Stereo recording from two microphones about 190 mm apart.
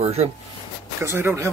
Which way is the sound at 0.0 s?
35° right (ahead or behind).